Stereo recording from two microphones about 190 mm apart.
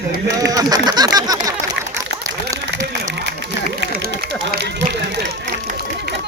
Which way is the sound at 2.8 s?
60° right (ahead or behind).